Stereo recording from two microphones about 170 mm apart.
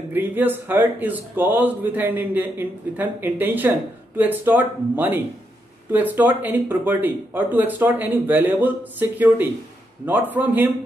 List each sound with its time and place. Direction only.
0.1 s speech: 10° right (ahead or behind)